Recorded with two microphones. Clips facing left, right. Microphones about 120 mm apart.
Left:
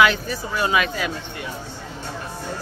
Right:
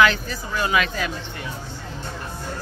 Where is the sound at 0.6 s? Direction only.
20° left (ahead or behind).